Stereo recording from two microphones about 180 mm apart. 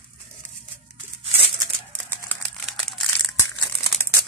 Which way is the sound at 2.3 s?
5° left (ahead or behind).